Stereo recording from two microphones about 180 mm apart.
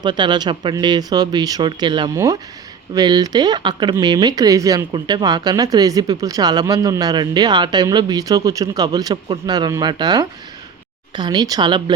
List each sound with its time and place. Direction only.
0.0 s speech: 25° right (ahead or behind)